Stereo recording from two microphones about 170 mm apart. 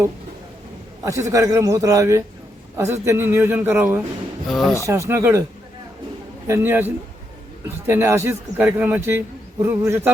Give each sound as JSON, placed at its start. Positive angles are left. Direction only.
{"t": 1.0, "sound": "a man's voice", "side_deg": -20}
{"t": 4.4, "sound": "speech", "side_deg": 0}
{"t": 4.9, "sound": "speech", "side_deg": -15}
{"t": 6.5, "sound": "speech", "side_deg": -10}